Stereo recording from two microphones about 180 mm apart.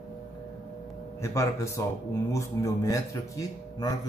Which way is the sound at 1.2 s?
15° left (ahead or behind).